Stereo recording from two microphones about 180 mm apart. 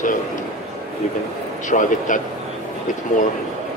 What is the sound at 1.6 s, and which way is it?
Speech, 45° left (ahead or behind).